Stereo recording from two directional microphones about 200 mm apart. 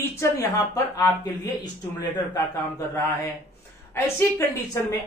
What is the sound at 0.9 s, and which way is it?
A man's voice, 20° left (ahead or behind).